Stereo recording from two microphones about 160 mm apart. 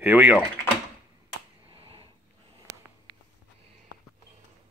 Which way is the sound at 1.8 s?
35° right (ahead or behind).